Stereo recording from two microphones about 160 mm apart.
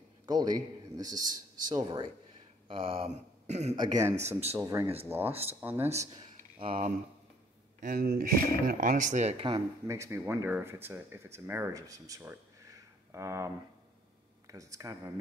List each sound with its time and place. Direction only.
0.3 s a man's voice: 25° right (ahead or behind)
2.7 s a sound: 35° right (ahead or behind)
3.7 s a man's voice: 25° right (ahead or behind)
4.2 s speech: 40° right (ahead or behind)
4.6 s a man's voice: 20° right (ahead or behind)
5.3 s speech: 40° right (ahead or behind)
5.6 s speech: 10° right (ahead or behind)
6.6 s speech: 35° right (ahead or behind)
7.8 s speech: 70° right (ahead or behind); by 9.6 s 40° right (ahead or behind)
9.8 s speech: 20° right (ahead or behind)
14.5 s a man's voice: 20° right (ahead or behind)